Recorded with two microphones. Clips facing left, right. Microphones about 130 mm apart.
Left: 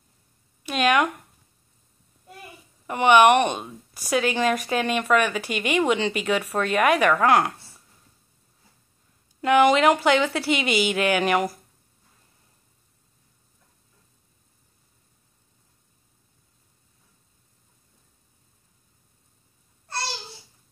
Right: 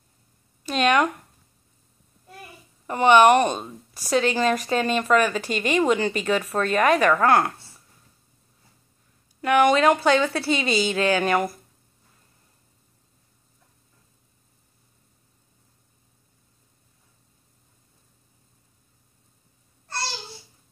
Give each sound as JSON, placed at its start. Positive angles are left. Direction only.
{"t": 0.7, "sound": "speech", "side_deg": 5}
{"t": 2.9, "sound": "a woman's voice", "side_deg": 10}
{"t": 9.4, "sound": "a woman's voice", "side_deg": 20}